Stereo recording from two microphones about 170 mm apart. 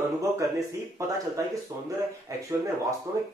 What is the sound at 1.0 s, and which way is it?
Speech, 20° right (ahead or behind).